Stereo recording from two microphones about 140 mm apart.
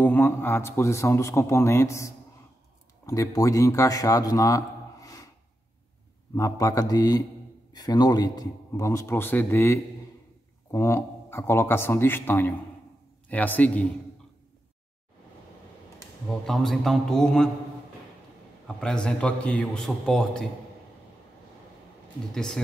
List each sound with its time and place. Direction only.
0.0 s a man's voice: 15° left (ahead or behind)
6.3 s a man's voice: 25° left (ahead or behind)
16.4 s a man's voice: centre (ahead or behind)
18.8 s a man's voice: 5° left (ahead or behind)
22.3 s a man's voice: 5° left (ahead or behind)